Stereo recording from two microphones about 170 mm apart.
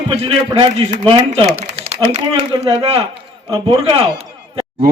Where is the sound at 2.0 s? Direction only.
35° right (ahead or behind).